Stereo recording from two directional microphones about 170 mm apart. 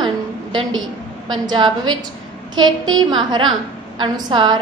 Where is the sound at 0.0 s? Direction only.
30° right (ahead or behind).